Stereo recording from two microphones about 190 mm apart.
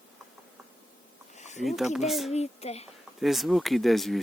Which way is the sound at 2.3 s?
35° left (ahead or behind).